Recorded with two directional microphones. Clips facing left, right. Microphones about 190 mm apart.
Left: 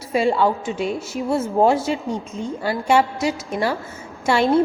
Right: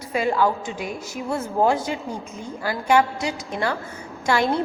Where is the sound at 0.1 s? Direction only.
25° left (ahead or behind).